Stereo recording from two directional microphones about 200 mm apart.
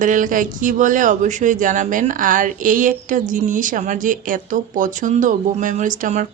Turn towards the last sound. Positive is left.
turn(degrees=-40)  # may be behind; listen again after turning